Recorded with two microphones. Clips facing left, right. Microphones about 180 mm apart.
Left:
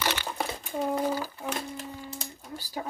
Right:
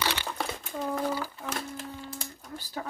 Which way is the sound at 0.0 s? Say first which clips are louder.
Left 1 dB; 15° left (ahead or behind).